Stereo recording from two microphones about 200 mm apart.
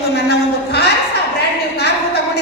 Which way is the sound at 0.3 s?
55° left (ahead or behind).